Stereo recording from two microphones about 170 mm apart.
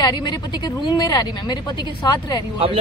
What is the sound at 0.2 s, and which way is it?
A woman's voice, 25° left (ahead or behind).